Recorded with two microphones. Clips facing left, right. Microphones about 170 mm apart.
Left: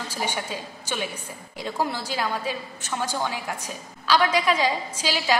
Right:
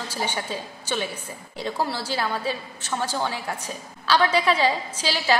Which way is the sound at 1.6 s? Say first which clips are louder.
Even; 15° left (ahead or behind).